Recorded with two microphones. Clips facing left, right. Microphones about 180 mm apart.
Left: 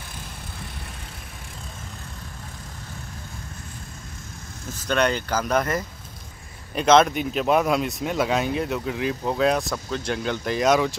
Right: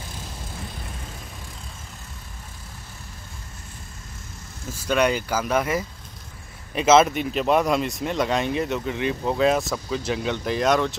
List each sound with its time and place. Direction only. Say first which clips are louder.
4.6 s speech: right 1 dB; 5° right (ahead or behind)